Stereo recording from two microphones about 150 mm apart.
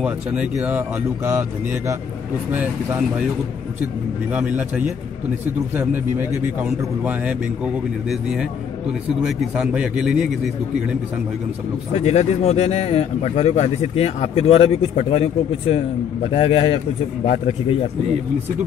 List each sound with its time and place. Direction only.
0.0 s speech: 5° right (ahead or behind)
4.3 s a man's voice: 10° right (ahead or behind)
11.9 s a man's voice: 45° left (ahead or behind)